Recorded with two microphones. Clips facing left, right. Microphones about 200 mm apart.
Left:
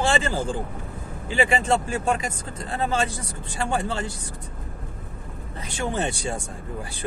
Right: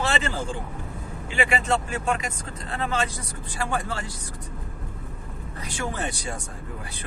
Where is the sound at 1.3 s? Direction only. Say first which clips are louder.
Left 3 dB; 30° left (ahead or behind).